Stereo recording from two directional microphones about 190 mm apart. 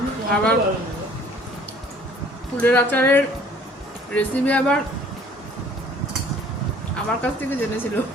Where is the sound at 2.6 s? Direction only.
10° left (ahead or behind).